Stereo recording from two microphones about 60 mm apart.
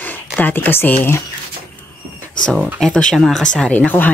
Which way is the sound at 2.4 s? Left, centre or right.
Centre.